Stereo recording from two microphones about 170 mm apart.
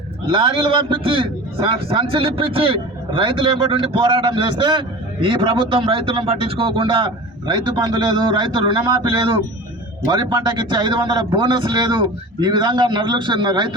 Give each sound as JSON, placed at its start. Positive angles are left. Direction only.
{"t": 0.3, "sound": "a man's voice", "side_deg": -30}